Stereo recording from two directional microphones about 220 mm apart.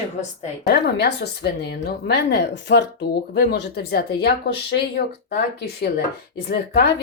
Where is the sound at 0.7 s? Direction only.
50° left (ahead or behind).